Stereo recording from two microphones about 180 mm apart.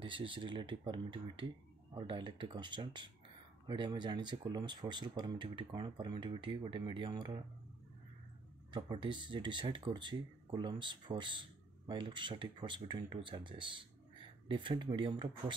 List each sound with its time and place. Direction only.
0.0 s speech: 30° right (ahead or behind)
8.7 s speech: 25° right (ahead or behind)